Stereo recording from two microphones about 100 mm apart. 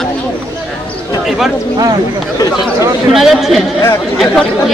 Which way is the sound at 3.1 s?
Centre (ahead or behind).